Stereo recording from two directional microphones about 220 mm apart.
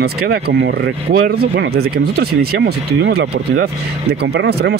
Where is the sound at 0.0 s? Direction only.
45° right (ahead or behind).